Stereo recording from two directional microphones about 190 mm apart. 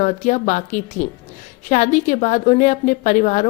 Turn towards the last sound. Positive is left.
turn(degrees=40)  # may be behind; listen again after turning